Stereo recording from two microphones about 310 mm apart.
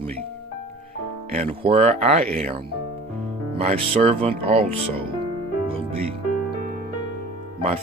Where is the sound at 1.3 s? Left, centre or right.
Right.